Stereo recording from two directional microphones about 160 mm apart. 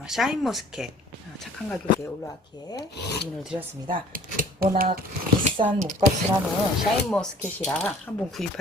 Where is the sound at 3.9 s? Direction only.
60° right (ahead or behind).